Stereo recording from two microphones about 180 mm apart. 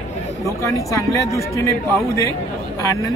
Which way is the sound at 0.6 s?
15° left (ahead or behind).